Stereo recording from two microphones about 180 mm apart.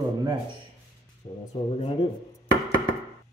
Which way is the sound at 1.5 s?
35° left (ahead or behind).